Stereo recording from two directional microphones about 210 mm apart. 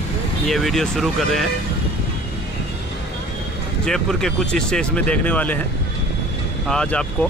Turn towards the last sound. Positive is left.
turn(degrees=5)  # may be behind; listen again after turning